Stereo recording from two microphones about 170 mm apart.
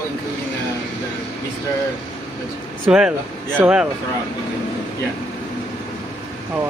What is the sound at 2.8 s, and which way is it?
Speech, 5° right (ahead or behind).